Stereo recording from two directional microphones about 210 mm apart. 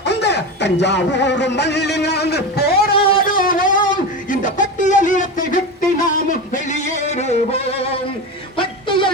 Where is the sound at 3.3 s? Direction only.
40° left (ahead or behind).